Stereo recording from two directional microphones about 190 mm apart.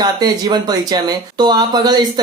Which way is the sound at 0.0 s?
20° right (ahead or behind).